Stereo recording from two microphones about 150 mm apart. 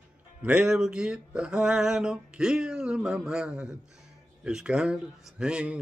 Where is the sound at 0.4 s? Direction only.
5° right (ahead or behind).